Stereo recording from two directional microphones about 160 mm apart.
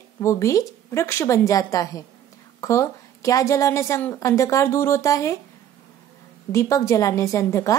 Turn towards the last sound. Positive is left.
turn(degrees=20)  # may be behind; listen again after turning